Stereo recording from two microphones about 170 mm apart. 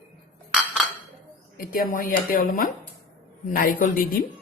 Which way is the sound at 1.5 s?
55° left (ahead or behind).